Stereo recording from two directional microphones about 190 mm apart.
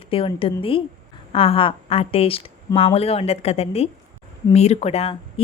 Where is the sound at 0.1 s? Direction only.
30° left (ahead or behind).